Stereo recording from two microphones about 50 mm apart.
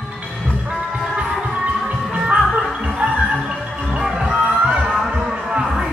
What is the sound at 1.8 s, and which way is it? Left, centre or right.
Music, right.